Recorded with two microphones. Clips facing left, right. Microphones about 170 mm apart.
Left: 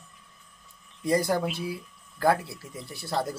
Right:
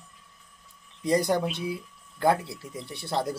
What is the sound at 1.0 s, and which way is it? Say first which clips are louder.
Speech: right 1 dB; 20° right (ahead or behind).